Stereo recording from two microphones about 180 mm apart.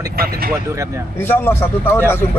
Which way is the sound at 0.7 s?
15° right (ahead or behind).